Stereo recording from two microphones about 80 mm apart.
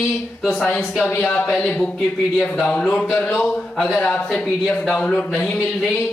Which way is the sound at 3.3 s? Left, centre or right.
Centre.